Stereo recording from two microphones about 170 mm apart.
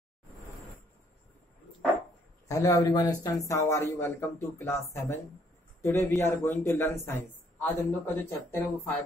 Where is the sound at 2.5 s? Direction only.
20° left (ahead or behind).